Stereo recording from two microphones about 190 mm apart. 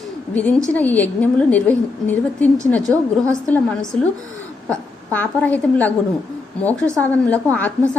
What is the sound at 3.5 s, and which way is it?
A woman's voice, 5° left (ahead or behind).